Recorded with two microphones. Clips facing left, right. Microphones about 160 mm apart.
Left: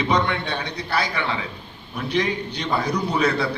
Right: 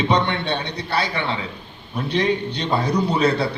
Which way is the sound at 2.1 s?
30° right (ahead or behind).